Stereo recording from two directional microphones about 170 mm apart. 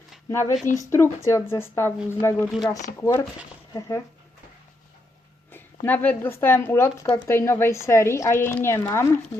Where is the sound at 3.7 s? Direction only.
20° left (ahead or behind).